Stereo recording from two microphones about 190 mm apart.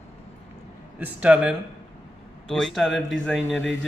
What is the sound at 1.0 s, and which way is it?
A man's voice, 5° right (ahead or behind).